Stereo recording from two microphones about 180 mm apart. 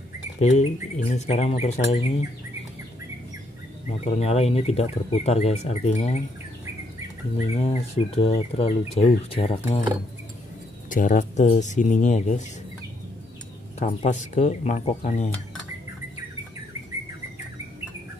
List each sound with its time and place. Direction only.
0.4 s speech: 40° left (ahead or behind)
4.0 s speech: 35° left (ahead or behind)
7.3 s speech: 35° left (ahead or behind)
10.9 s speech: 45° left (ahead or behind)
13.7 s speech: 40° left (ahead or behind)